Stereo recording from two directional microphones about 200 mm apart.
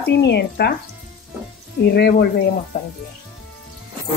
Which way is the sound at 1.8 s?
55° left (ahead or behind).